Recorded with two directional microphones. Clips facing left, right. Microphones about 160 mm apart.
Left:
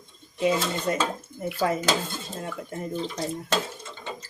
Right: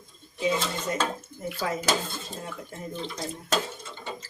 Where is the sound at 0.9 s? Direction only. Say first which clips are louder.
Left 2 dB; 65° left (ahead or behind).